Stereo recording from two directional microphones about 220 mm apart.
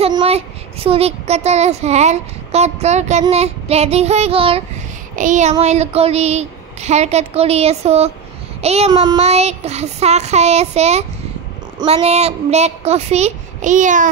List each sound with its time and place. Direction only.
0.0 s a child's voice: 25° right (ahead or behind)